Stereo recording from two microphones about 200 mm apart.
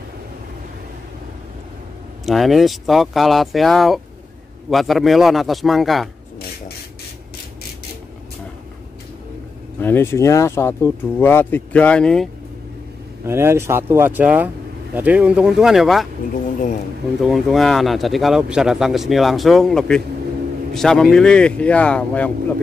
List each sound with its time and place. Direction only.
2.2 s speech: centre (ahead or behind)
9.8 s speech: 10° left (ahead or behind)
13.2 s speech: 10° right (ahead or behind)
17.2 s speech: centre (ahead or behind)